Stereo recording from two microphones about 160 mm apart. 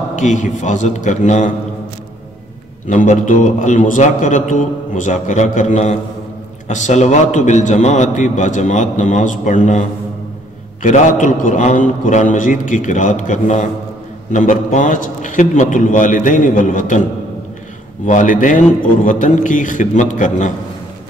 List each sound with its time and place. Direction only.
0.1 s a man's voice: 50° left (ahead or behind)
2.9 s a man's voice: 50° left (ahead or behind)
18.0 s a man's voice: 55° left (ahead or behind)